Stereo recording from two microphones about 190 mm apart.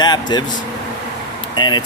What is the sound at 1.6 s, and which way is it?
Speech, 25° left (ahead or behind).